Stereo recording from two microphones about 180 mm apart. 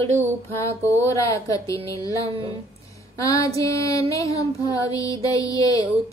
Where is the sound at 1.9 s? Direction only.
20° left (ahead or behind).